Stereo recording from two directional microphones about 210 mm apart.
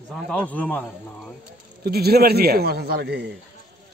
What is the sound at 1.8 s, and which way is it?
A man's voice, 50° right (ahead or behind).